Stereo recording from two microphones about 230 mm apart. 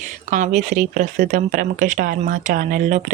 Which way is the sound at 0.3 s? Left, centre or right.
Right.